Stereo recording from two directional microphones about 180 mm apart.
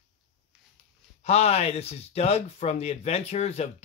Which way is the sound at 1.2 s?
35° left (ahead or behind).